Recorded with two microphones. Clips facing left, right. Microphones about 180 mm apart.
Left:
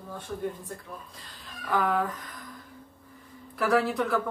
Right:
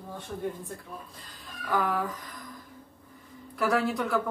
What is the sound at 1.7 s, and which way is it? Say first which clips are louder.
Speech: left 2 dB; centre (ahead or behind).